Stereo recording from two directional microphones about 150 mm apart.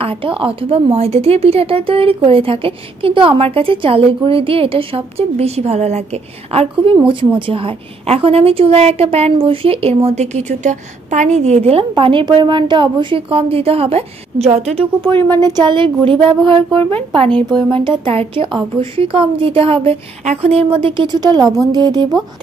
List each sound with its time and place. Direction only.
0.0 s speech: 35° right (ahead or behind)
15.2 s speech: 25° right (ahead or behind)